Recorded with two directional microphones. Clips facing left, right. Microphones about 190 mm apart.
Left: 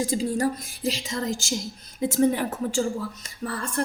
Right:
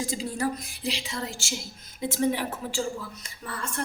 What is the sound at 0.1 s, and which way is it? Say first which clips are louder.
A woman's voice: left 5 dB; 45° left (ahead or behind).